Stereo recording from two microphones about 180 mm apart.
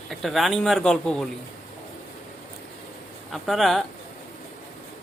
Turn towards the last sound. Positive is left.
turn(degrees=0)  # may be behind; listen again after turning